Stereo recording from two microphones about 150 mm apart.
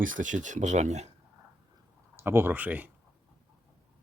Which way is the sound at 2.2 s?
15° right (ahead or behind).